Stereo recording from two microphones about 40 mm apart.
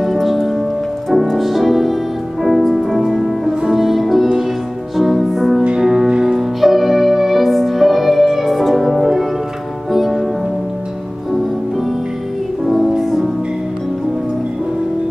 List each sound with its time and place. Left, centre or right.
0.0 s music: centre
5.8 s music: centre
12.6 s music: centre